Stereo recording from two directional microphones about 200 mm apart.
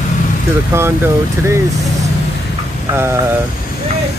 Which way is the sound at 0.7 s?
15° right (ahead or behind).